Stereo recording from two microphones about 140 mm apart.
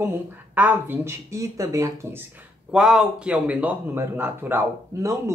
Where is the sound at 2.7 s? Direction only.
5° right (ahead or behind).